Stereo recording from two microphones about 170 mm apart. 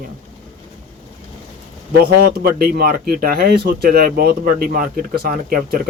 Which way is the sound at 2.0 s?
60° right (ahead or behind).